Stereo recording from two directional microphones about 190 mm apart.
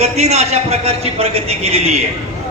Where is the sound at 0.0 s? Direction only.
35° right (ahead or behind).